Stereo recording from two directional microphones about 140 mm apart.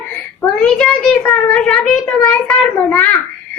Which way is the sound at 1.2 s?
5° left (ahead or behind).